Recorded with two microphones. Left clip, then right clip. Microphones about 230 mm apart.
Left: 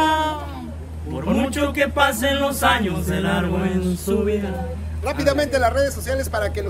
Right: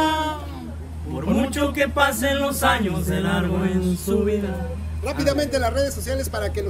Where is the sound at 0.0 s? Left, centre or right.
Centre.